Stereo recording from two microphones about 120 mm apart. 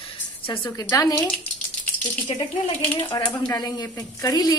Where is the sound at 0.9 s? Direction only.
25° left (ahead or behind).